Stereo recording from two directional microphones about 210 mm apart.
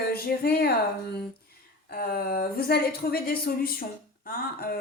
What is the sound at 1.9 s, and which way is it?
Speech, 45° left (ahead or behind).